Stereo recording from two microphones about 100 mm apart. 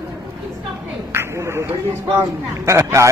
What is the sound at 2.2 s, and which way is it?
Speech, 30° right (ahead or behind).